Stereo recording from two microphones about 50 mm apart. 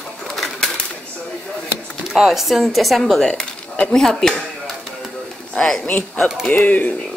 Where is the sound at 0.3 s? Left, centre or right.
Centre.